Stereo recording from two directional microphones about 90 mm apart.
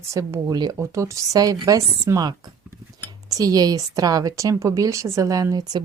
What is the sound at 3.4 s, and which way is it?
Speech, 45° right (ahead or behind).